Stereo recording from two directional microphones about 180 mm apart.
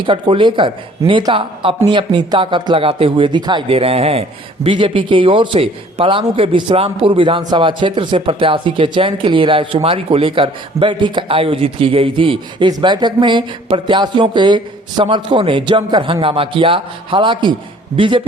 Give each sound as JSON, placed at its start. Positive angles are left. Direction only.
{"t": 0.0, "sound": "speech", "side_deg": -30}